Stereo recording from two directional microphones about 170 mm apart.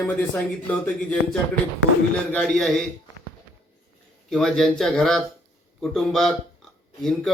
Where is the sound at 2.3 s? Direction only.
5° left (ahead or behind).